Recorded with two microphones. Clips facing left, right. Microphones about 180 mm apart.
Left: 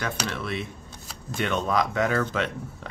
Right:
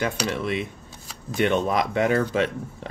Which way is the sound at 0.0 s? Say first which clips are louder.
Right 5 dB; 15° right (ahead or behind).